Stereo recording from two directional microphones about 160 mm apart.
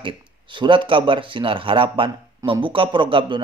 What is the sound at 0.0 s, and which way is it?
Speech, 30° right (ahead or behind).